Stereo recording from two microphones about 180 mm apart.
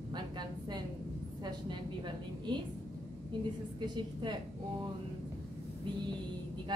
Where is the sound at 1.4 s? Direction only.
25° right (ahead or behind).